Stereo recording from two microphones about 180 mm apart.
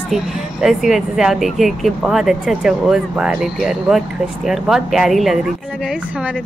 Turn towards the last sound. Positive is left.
turn(degrees=0)  # may be behind; listen again after turning